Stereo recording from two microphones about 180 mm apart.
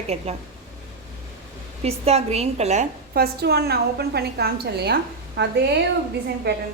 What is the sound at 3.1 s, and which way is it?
A woman's voice, 60° right (ahead or behind).